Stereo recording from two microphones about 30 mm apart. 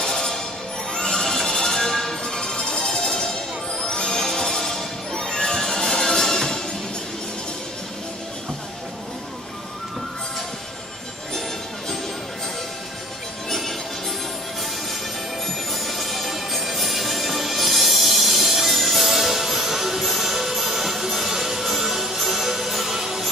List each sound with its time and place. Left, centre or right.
0.0 s music: centre
2.2 s music: left
2.8 s music: centre
3.8 s music: left
4.2 s music: centre
5.1 s music: left
13.5 s music: centre
15.4 s music: centre
22.9 s a sound: centre